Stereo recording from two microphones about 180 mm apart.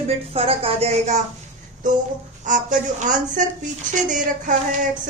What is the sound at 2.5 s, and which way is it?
A woman's voice, 45° right (ahead or behind).